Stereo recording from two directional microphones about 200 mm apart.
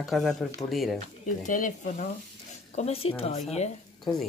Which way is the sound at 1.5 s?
40° left (ahead or behind).